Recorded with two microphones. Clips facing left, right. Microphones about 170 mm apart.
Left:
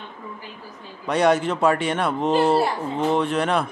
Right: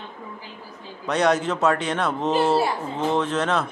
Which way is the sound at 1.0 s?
5° left (ahead or behind).